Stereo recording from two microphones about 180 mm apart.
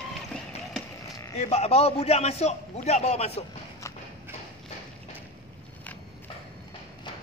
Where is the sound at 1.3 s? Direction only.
35° left (ahead or behind).